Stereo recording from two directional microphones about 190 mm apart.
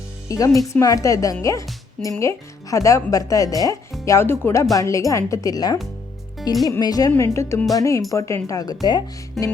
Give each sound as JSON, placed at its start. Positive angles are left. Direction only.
{"t": 0.3, "sound": "speech", "side_deg": 15}
{"t": 9.4, "sound": "music", "side_deg": 0}